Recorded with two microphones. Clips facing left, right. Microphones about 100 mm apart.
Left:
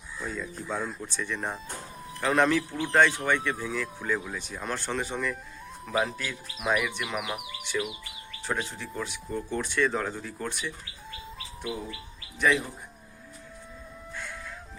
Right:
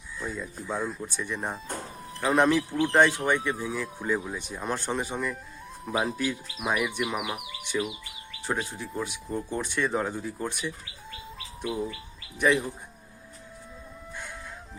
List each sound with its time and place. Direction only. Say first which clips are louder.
0.3 s speech: even; 10° right (ahead or behind)
12.4 s speech: right 1 dB; 15° right (ahead or behind)